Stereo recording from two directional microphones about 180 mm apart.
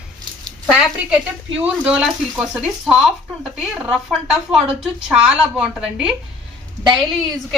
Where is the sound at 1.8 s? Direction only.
5° right (ahead or behind).